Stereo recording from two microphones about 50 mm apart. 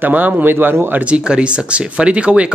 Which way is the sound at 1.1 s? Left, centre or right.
Right.